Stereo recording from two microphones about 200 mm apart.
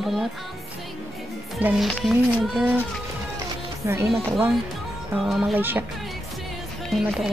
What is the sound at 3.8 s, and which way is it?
Speech, 15° right (ahead or behind).